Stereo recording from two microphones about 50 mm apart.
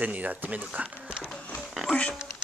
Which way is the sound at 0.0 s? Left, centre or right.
Right.